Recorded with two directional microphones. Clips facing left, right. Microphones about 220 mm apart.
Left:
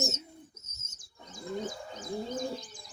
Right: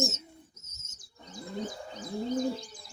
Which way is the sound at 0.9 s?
45° left (ahead or behind).